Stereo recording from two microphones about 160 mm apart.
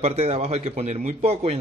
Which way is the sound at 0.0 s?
40° right (ahead or behind).